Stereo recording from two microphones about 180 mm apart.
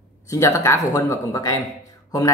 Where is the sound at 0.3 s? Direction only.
15° left (ahead or behind).